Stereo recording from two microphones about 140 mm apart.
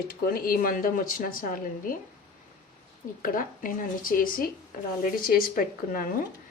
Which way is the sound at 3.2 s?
80° left.